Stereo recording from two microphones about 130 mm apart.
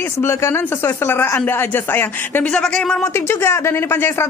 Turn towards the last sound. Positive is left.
turn(degrees=20)  # may be behind; listen again after turning